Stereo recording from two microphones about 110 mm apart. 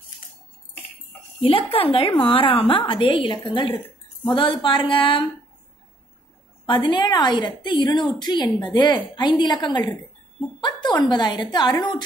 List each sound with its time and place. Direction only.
1.4 s a woman's voice: 60° left (ahead or behind)
6.6 s a woman's voice: 50° left (ahead or behind)